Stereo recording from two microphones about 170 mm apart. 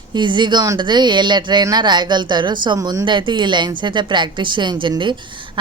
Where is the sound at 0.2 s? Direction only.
25° right (ahead or behind).